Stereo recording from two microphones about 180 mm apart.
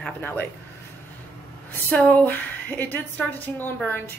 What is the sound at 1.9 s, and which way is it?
A woman's voice, 10° left (ahead or behind).